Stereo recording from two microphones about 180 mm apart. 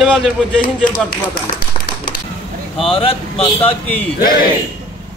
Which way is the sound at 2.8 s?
30° left (ahead or behind).